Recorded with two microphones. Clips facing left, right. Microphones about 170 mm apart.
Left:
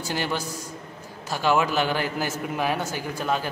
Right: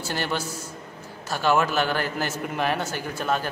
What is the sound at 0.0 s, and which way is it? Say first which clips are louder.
A man's voice: even; 15° left (ahead or behind).